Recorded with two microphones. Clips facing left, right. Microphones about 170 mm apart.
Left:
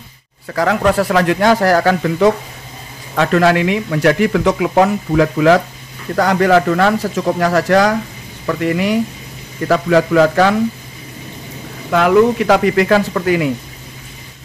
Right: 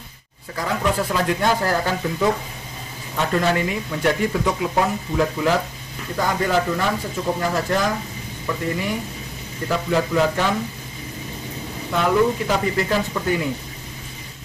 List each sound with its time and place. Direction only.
0.5 s a man's voice: 75° left (ahead or behind)
11.9 s speech: 90° left